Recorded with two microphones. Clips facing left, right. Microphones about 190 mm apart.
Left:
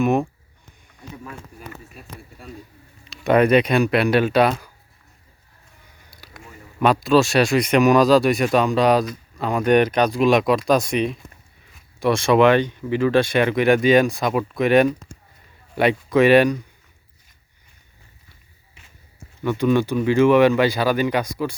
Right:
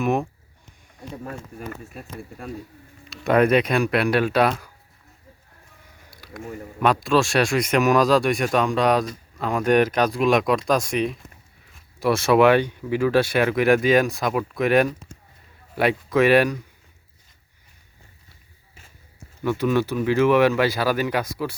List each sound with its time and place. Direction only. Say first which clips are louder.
0.0 s speech: left 3 dB; centre (ahead or behind)
1.0 s speech: right 3 dB; 40° right (ahead or behind)
3.1 s speech: left 2 dB; centre (ahead or behind)
6.1 s a sound: right 7 dB; centre (ahead or behind)
6.8 s speech: left 3 dB; centre (ahead or behind)
19.4 s speech: left 2 dB; 5° right (ahead or behind)